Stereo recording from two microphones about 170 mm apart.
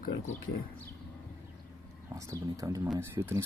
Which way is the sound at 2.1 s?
20° right (ahead or behind).